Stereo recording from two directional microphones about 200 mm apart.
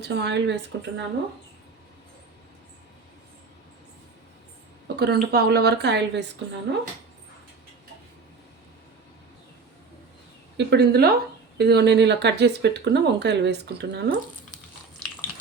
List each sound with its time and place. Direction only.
0.0 s speech: 55° right (ahead or behind)
4.9 s speech: 55° right (ahead or behind)
10.6 s speech: 55° right (ahead or behind)